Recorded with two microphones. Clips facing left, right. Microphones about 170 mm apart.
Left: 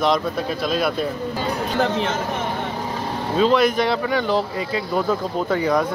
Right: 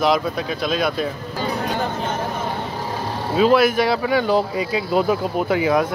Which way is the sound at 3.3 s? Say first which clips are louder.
Right 2 dB; 10° right (ahead or behind).